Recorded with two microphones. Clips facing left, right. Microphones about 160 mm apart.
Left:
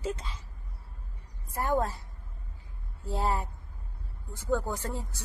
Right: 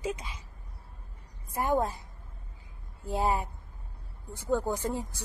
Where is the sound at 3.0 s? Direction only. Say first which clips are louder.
Right 2 dB; 15° right (ahead or behind).